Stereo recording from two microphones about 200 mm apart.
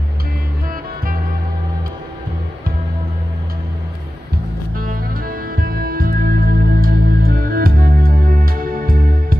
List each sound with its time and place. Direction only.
4.7 s music: 45° right (ahead or behind)